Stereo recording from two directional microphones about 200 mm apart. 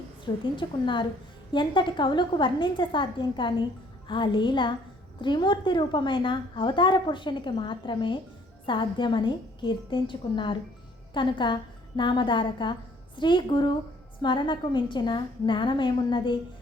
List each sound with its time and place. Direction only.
0.5 s a woman's voice: 25° left (ahead or behind)